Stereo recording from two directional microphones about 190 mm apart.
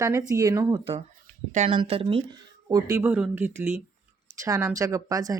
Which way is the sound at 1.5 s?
35° right (ahead or behind).